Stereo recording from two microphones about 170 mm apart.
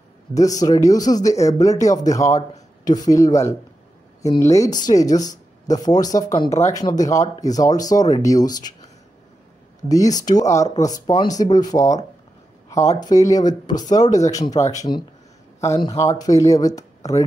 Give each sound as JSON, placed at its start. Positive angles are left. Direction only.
{"t": 0.3, "sound": "speech", "side_deg": 20}
{"t": 9.8, "sound": "speech", "side_deg": 20}
{"t": 12.6, "sound": "a sound", "side_deg": 20}
{"t": 13.0, "sound": "speech", "side_deg": 20}